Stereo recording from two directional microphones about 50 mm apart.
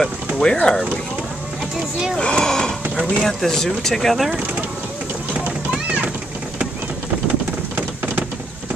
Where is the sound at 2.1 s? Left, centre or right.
Left.